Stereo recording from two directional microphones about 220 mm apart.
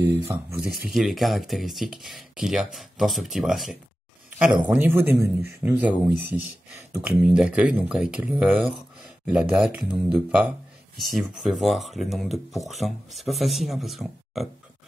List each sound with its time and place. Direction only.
0.0 s speech: 15° right (ahead or behind)
0.8 s speech: centre (ahead or behind)